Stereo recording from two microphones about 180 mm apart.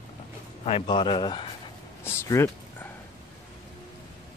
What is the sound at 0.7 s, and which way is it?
Speech, 30° left (ahead or behind).